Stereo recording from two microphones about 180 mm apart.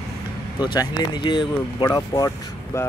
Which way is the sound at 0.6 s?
25° left (ahead or behind).